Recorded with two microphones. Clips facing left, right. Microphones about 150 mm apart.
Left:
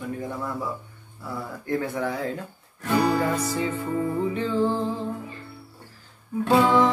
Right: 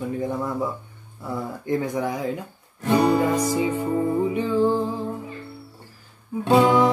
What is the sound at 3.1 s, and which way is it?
Music, 10° right (ahead or behind).